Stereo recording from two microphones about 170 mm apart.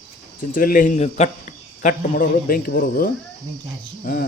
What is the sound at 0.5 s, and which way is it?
A man's voice, 55° left (ahead or behind).